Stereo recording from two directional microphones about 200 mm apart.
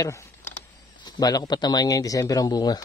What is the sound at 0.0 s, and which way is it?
Speech, 15° left (ahead or behind).